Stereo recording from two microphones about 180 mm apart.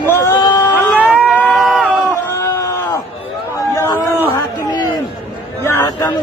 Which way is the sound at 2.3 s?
15° left (ahead or behind).